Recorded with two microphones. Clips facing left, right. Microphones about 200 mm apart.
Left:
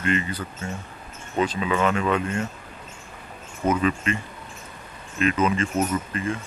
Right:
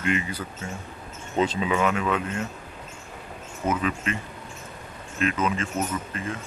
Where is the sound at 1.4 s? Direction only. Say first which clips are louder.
Even; 25° right (ahead or behind).